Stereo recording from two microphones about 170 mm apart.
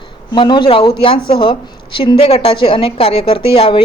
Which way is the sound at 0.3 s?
25° left (ahead or behind).